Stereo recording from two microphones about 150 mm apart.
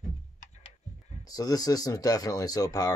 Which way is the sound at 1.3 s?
25° left (ahead or behind).